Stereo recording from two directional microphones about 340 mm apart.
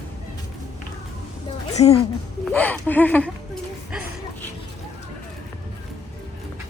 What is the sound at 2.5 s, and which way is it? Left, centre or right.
Speech, centre.